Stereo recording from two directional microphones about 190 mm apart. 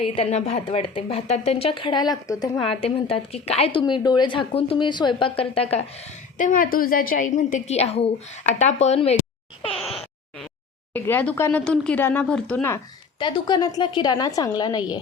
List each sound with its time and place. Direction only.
0.0 s a woman's voice: 30° left (ahead or behind)
6.3 s a woman's voice: 45° left (ahead or behind)
10.9 s speech: 10° left (ahead or behind)
13.1 s a woman's voice: 25° left (ahead or behind)